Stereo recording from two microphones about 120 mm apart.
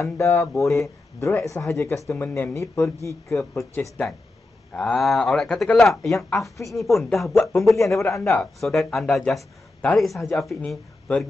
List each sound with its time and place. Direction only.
0.0 s speech: 25° left (ahead or behind)
4.7 s speech: 5° left (ahead or behind)
7.7 s speech: 25° left (ahead or behind)
8.4 s speech: centre (ahead or behind)